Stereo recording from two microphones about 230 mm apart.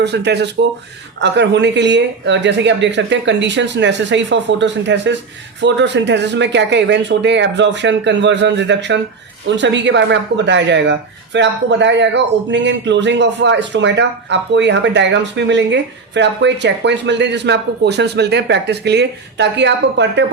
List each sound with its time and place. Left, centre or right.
0.0 s speech: right